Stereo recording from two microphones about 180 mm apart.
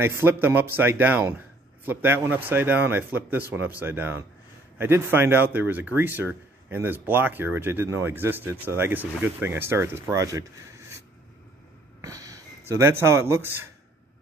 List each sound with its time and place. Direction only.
0.0 s speech: 10° right (ahead or behind)
12.0 s speech: 20° right (ahead or behind)